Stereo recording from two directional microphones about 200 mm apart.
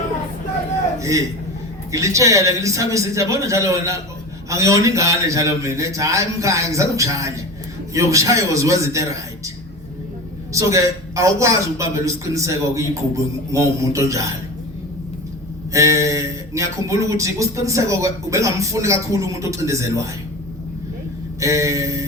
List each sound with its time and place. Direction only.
0.9 s a sound: 15° right (ahead or behind)
1.9 s speech: 15° right (ahead or behind)
10.5 s speech: 15° right (ahead or behind)
15.7 s speech: 15° right (ahead or behind)
21.4 s speech: 15° right (ahead or behind)